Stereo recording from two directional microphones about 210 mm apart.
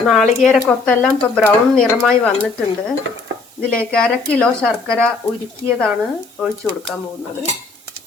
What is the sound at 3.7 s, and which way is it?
Speech, 5° left (ahead or behind).